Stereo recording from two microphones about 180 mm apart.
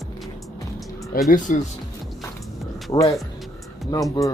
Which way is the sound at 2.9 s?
25° left (ahead or behind).